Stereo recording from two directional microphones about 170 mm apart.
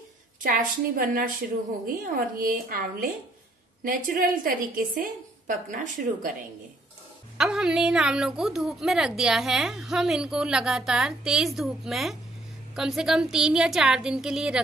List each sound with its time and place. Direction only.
0.4 s a woman's voice: 55° right (ahead or behind)
7.3 s a woman's voice: 5° right (ahead or behind)